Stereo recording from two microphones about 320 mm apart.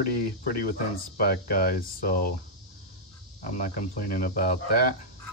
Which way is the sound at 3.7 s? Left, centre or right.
Left.